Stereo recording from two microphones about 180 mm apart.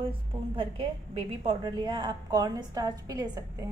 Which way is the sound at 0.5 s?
30° right (ahead or behind).